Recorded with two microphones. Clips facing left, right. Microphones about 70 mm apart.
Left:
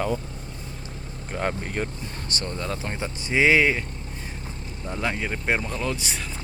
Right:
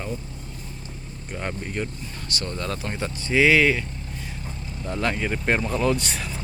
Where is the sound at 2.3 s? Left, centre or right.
Left.